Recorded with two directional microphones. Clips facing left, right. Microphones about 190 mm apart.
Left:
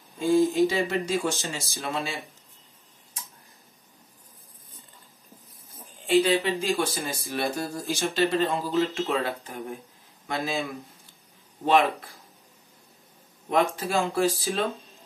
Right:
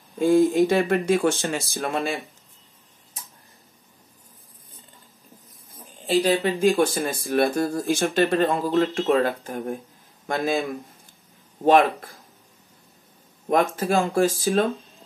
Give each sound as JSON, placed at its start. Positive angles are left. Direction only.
{"t": 0.2, "sound": "speech", "side_deg": -55}
{"t": 6.4, "sound": "speech", "side_deg": -55}
{"t": 11.6, "sound": "speech", "side_deg": -50}
{"t": 13.7, "sound": "speech", "side_deg": -55}